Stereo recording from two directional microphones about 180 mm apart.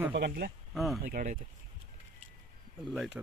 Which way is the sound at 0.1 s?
65° right (ahead or behind).